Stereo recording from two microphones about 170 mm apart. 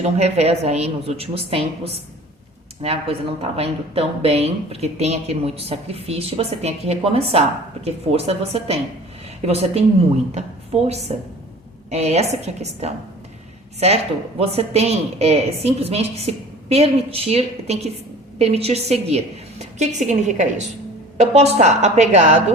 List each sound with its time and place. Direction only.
0.0 s a woman's voice: 40° right (ahead or behind)